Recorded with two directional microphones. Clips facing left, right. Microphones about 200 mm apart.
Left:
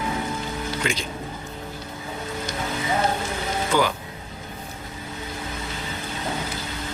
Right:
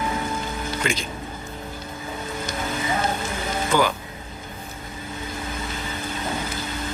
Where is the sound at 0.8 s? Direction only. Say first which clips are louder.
Right 1 dB; 50° right (ahead or behind).